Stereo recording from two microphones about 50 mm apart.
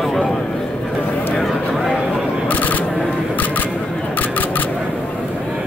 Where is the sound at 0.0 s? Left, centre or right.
Centre.